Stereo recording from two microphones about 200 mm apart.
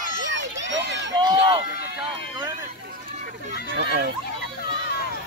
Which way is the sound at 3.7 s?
55° right (ahead or behind).